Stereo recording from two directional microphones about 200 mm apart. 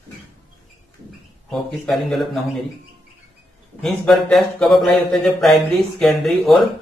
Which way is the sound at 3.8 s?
Centre (ahead or behind).